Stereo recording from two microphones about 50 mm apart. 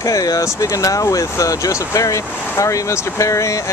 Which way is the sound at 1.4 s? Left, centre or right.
Left.